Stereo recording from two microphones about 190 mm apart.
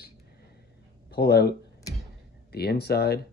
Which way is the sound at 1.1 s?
55° left (ahead or behind).